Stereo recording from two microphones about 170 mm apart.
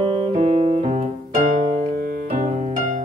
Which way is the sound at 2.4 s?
40° right (ahead or behind).